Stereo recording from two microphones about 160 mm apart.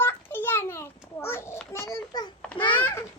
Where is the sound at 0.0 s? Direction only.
15° left (ahead or behind).